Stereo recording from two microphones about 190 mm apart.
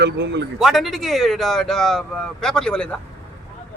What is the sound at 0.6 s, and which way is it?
Speech, centre (ahead or behind).